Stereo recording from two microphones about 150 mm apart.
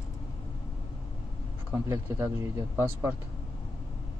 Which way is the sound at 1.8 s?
20° right (ahead or behind).